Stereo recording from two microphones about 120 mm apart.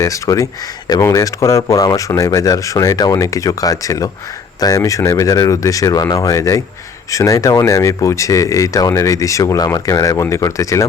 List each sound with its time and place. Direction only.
0.0 s speech: 25° left (ahead or behind)